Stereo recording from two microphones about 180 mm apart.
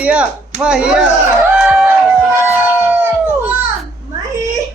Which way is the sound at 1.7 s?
10° right (ahead or behind).